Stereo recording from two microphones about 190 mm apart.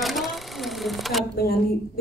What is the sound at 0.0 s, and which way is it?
Sewing machine, centre (ahead or behind).